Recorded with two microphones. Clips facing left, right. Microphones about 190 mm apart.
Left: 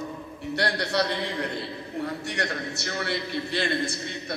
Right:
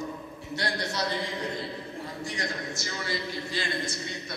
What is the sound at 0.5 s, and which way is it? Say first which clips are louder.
A man's voice: left 5 dB; 65° left (ahead or behind).